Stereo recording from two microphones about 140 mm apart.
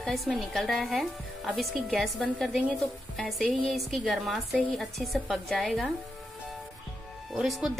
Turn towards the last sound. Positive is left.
turn(degrees=0)  # may be behind; listen again after turning